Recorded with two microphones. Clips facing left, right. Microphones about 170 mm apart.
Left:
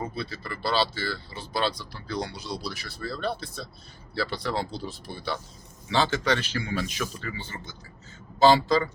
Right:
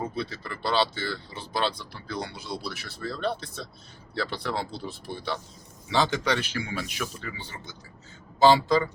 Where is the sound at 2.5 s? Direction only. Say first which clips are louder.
Right 3 dB; 10° right (ahead or behind).